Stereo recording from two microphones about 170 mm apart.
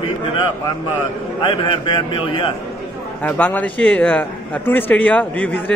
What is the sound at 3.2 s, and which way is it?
A man's voice, 10° left (ahead or behind).